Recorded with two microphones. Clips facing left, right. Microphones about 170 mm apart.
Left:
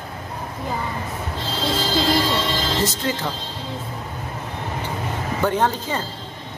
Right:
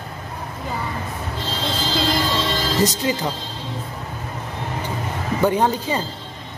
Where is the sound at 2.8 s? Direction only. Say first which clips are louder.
Right 3 dB; 15° right (ahead or behind).